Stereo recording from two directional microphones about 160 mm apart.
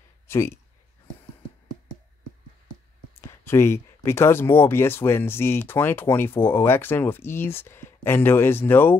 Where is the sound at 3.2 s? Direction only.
15° left (ahead or behind).